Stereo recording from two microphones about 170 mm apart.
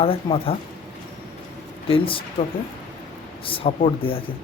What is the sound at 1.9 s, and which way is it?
Speech, 30° left (ahead or behind).